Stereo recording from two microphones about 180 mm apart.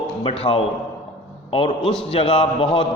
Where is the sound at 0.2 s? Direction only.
30° left (ahead or behind).